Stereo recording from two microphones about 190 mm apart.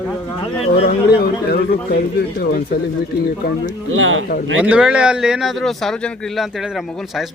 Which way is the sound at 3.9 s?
90° right.